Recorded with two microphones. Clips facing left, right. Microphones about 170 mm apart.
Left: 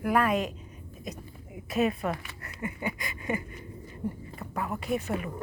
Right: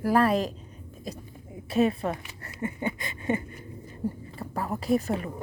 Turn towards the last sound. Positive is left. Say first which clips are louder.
# right 4 dB
turn(degrees=-35)  # may be behind; listen again after turning